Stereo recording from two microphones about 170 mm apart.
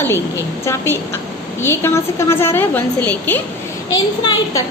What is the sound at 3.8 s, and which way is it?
Speech, 25° left (ahead or behind).